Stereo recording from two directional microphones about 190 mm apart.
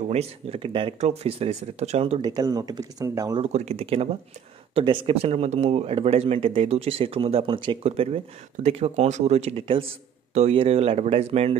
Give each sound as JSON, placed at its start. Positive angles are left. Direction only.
{"t": 0.1, "sound": "speech", "side_deg": -35}
{"t": 3.5, "sound": "speech", "side_deg": -35}